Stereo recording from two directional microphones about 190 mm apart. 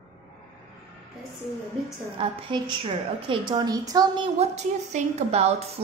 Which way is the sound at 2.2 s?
25° right (ahead or behind).